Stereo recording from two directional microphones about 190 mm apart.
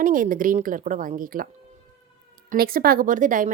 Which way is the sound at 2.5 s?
50° right (ahead or behind).